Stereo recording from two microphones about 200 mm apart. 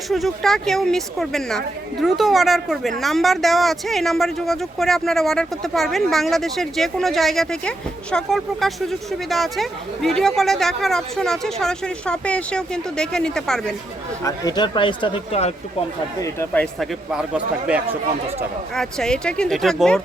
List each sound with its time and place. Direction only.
0.1 s speech: centre (ahead or behind)
14.3 s speech: 20° left (ahead or behind)
16.2 s speech: 15° left (ahead or behind)
16.8 s speech: 5° right (ahead or behind)